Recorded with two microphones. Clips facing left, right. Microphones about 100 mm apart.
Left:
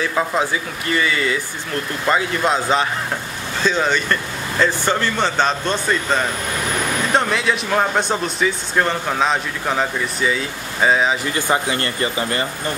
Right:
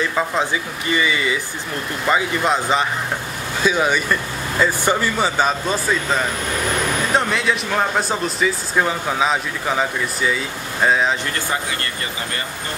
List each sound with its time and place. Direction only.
0.0 s speech: centre (ahead or behind)
11.3 s speech: 20° left (ahead or behind)